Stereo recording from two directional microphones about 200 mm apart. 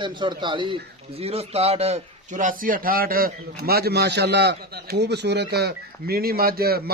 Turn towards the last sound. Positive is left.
turn(degrees=-50)  # may be behind; listen again after turning